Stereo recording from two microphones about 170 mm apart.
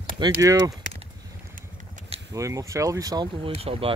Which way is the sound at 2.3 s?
20° right (ahead or behind).